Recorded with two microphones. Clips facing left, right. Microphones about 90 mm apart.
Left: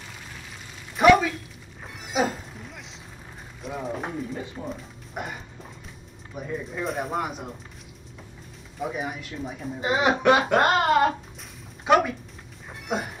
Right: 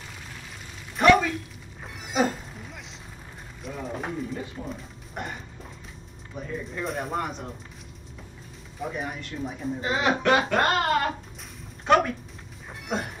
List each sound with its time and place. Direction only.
0.9 s a sound: 5° left (ahead or behind)
2.0 s music: centre (ahead or behind)
3.6 s speech: centre (ahead or behind)
8.7 s speech: 5° left (ahead or behind)
9.8 s speech: 20° left (ahead or behind)
11.8 s speech: 5° left (ahead or behind)
12.8 s music: 5° left (ahead or behind)